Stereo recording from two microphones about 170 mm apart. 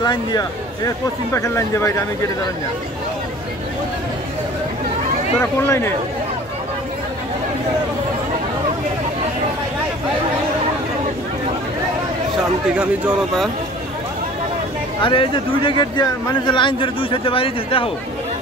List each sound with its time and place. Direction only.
0.0 s speech: 25° left (ahead or behind)
5.4 s speech: 15° left (ahead or behind)
12.7 s speech: 5° right (ahead or behind)
15.0 s speech: 30° left (ahead or behind)